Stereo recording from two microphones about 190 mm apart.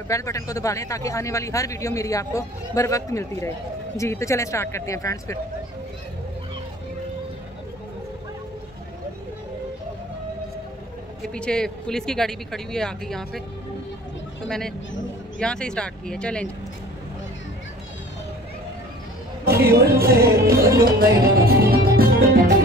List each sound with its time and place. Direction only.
0.1 s a man's voice: 15° left (ahead or behind)
11.2 s speech: 5° left (ahead or behind)
15.3 s speech: 5° left (ahead or behind)
19.4 s music: 55° right (ahead or behind)